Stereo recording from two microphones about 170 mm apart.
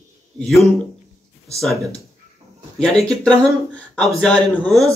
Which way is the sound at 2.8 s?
5° left (ahead or behind).